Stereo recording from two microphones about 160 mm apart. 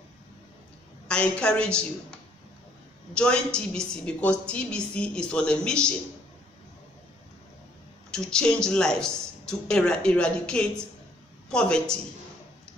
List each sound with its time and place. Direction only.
1.0 s a woman's voice: 5° left (ahead or behind)
3.2 s a woman's voice: 5° left (ahead or behind)
8.1 s speech: 5° left (ahead or behind)